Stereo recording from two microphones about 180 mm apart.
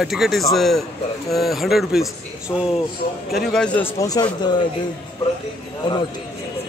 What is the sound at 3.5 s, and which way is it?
Speech, 5° left (ahead or behind).